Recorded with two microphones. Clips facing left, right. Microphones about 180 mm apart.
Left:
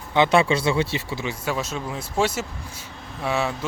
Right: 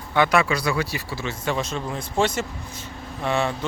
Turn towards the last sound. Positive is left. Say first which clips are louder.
# right 1 dB
turn(degrees=5)  # may be behind; listen again after turning